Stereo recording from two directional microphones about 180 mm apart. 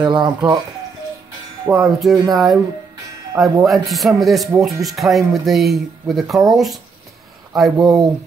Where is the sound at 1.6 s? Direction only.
5° right (ahead or behind).